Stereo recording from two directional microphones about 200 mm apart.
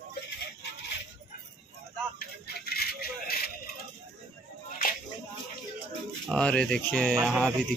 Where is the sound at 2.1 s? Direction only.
50° left (ahead or behind).